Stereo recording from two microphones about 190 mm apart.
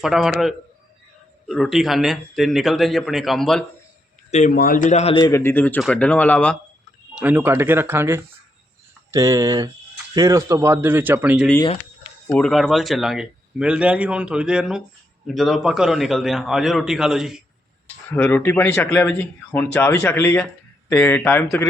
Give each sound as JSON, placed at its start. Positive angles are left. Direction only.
{"t": 0.0, "sound": "a man's voice", "side_deg": 0}
{"t": 4.3, "sound": "speech", "side_deg": 35}
{"t": 4.5, "sound": "speech", "side_deg": 50}
{"t": 5.2, "sound": "speech", "side_deg": 15}
{"t": 7.2, "sound": "a man's voice", "side_deg": -10}
{"t": 12.3, "sound": "a man's voice", "side_deg": 5}
{"t": 18.1, "sound": "speech", "side_deg": 10}